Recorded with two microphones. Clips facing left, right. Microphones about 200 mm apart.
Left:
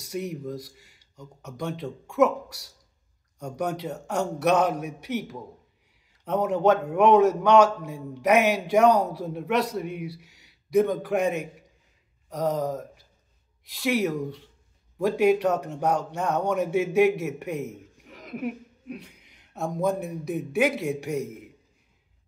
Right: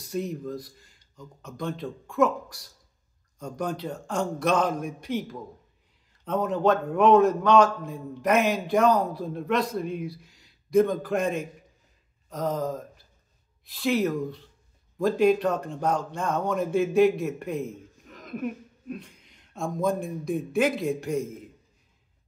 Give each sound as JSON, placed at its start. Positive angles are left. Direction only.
{"t": 0.1, "sound": "a man's voice", "side_deg": 10}
{"t": 3.3, "sound": "a man's voice", "side_deg": 10}
{"t": 9.8, "sound": "speech", "side_deg": 70}
{"t": 10.7, "sound": "a man's voice", "side_deg": 10}
{"t": 12.3, "sound": "a sound", "side_deg": 10}
{"t": 13.7, "sound": "a man's voice", "side_deg": 10}